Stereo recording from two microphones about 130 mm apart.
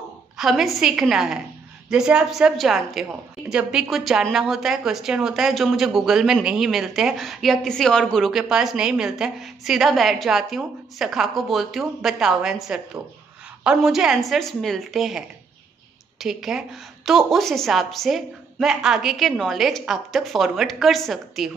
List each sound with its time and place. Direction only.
0.4 s a woman's voice: 5° right (ahead or behind)